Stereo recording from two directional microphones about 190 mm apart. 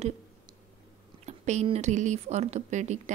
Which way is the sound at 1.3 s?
35° right (ahead or behind).